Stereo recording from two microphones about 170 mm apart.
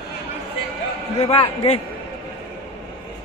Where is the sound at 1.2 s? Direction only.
35° left (ahead or behind).